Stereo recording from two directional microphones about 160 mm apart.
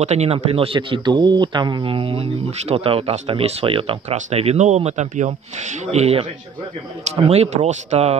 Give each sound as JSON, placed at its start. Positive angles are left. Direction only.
{"t": 0.0, "sound": "speech", "side_deg": -45}